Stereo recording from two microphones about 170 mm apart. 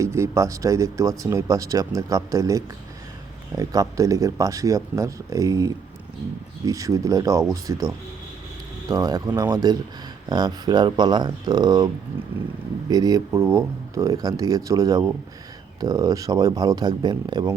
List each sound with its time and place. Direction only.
0.0 s speech: 15° right (ahead or behind)
12.9 s speech: 20° right (ahead or behind)